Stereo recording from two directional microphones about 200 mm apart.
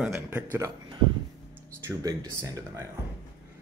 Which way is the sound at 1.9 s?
15° right (ahead or behind).